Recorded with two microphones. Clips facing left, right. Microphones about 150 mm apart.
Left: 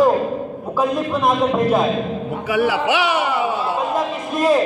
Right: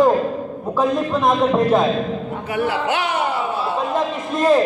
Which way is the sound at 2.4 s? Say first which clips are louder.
Left 3 dB; 90° left.